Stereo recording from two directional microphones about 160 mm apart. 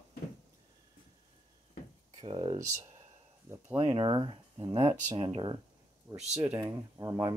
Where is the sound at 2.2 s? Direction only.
30° right (ahead or behind).